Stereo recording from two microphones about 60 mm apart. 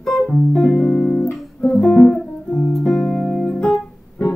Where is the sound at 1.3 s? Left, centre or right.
Centre.